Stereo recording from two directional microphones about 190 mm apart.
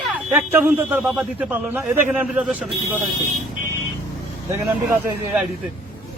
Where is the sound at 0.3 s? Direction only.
10° right (ahead or behind).